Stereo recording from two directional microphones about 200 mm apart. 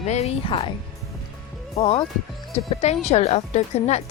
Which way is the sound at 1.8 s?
30° left (ahead or behind).